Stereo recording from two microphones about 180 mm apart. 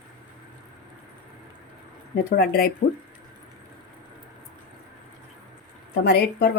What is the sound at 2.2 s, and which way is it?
Speech, 60° left (ahead or behind).